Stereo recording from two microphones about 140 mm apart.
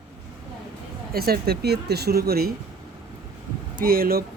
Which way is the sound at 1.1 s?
90° right.